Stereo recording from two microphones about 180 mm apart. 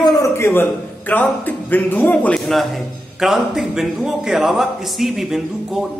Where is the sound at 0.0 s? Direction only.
15° left (ahead or behind).